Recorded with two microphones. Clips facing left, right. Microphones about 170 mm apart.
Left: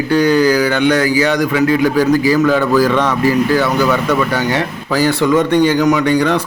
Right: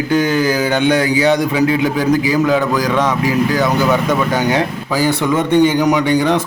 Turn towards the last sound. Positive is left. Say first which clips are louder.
# even
turn(degrees=-15)  # may be behind; listen again after turning